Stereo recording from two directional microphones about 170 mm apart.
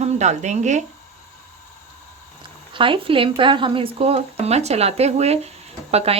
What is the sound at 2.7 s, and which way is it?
Speech, 30° right (ahead or behind).